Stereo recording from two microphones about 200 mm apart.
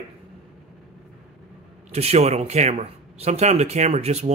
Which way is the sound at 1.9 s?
30° right (ahead or behind).